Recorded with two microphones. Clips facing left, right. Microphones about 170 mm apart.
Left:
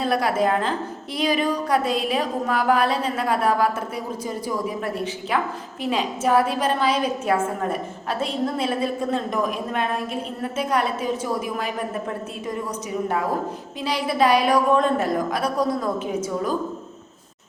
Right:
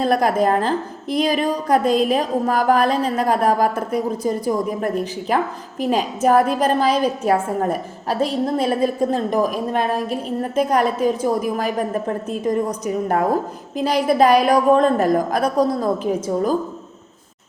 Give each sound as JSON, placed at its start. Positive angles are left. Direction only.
{"t": 0.0, "sound": "a woman's voice", "side_deg": -45}
{"t": 13.7, "sound": "a woman's voice", "side_deg": -45}